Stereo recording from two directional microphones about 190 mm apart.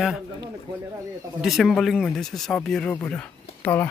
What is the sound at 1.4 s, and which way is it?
Speech, centre (ahead or behind).